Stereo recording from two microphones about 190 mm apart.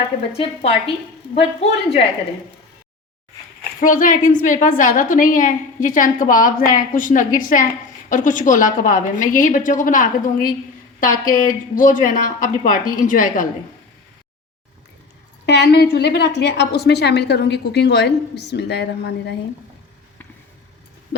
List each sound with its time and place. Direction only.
0.3 s a woman's voice: 30° left (ahead or behind)
3.8 s a woman's voice: 45° left (ahead or behind)
15.4 s a woman's voice: 60° left (ahead or behind)